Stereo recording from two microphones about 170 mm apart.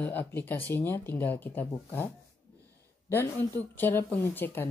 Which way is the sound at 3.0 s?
15° left (ahead or behind).